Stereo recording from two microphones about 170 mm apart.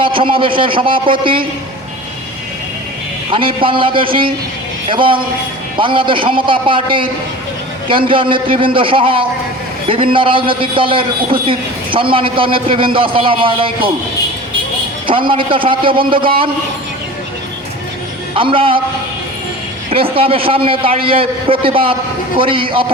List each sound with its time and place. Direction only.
0.0 s a man's voice: 30° right (ahead or behind)
3.3 s a man's voice: 30° right (ahead or behind)
15.0 s a man's voice: 30° right (ahead or behind)
18.3 s a man's voice: 30° right (ahead or behind)
19.9 s a man's voice: 35° right (ahead or behind)